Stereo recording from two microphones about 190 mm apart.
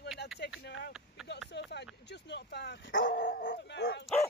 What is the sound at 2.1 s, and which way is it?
Dog, 65° left (ahead or behind).